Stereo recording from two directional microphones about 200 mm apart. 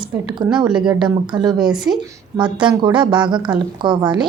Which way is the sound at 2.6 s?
20° right (ahead or behind).